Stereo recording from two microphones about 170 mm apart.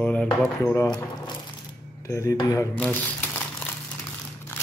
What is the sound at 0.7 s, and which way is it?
Speech, 25° left (ahead or behind).